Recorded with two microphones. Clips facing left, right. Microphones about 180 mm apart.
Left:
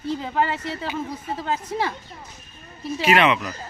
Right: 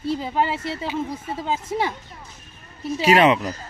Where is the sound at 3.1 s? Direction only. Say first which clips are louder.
Right 3 dB; 35° right (ahead or behind).